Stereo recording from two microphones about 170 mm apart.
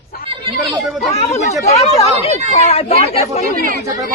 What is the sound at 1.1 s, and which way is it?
Speech, 40° left (ahead or behind).